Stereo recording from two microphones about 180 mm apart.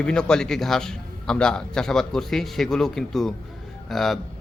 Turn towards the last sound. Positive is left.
turn(degrees=0)  # may be behind; listen again after turning